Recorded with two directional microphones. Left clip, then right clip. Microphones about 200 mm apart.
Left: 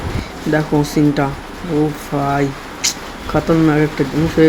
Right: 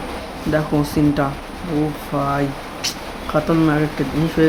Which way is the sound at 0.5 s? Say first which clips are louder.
Left 3 dB; 10° left (ahead or behind).